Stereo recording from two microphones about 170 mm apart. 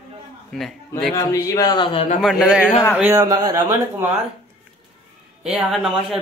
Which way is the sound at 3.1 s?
20° right (ahead or behind).